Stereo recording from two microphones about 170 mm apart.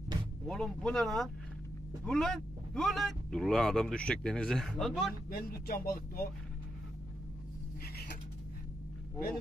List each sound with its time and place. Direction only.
0.5 s speech: 5° left (ahead or behind)
5.3 s speech: 60° left (ahead or behind)